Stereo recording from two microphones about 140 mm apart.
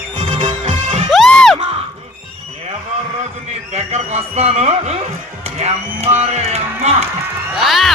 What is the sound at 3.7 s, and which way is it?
Speech, 50° right (ahead or behind).